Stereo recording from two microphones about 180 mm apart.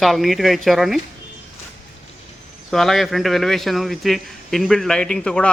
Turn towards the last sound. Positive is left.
turn(degrees=5)  # may be behind; listen again after turning